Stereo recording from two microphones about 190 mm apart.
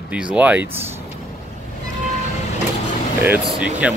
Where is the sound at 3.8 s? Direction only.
5° right (ahead or behind).